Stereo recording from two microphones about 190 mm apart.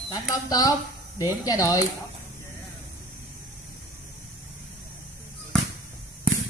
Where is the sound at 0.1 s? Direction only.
20° left (ahead or behind).